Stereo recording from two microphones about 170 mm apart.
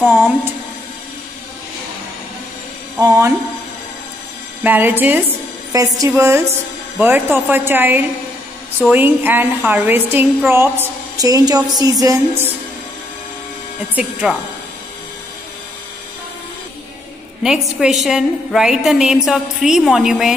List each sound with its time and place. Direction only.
0.0 s a sound: 10° right (ahead or behind)
3.0 s a woman's voice: 15° right (ahead or behind)
4.6 s a woman's voice: 10° right (ahead or behind)
14.3 s a woman's voice: centre (ahead or behind)
17.4 s a woman's voice: 5° right (ahead or behind)